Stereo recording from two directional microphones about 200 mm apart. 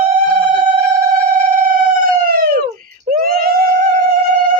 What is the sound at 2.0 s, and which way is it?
Police car, 45° right (ahead or behind).